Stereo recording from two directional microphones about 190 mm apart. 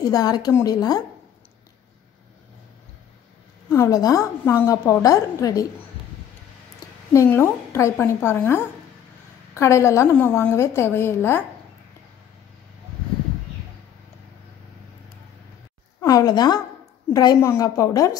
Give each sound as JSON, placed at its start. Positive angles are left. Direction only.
{"t": 0.1, "sound": "a woman's voice", "side_deg": 20}
{"t": 3.7, "sound": "a woman's voice", "side_deg": 20}
{"t": 7.1, "sound": "a woman's voice", "side_deg": 10}
{"t": 16.0, "sound": "a woman's voice", "side_deg": 20}